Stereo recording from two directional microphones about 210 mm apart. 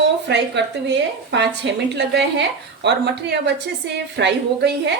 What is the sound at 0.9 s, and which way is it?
A woman's voice, 55° right (ahead or behind).